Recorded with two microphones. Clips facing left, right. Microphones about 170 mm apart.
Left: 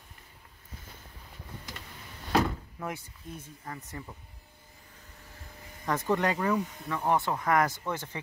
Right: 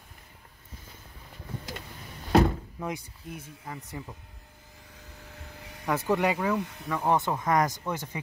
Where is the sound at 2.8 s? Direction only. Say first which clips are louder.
Right 1 dB; 15° right (ahead or behind).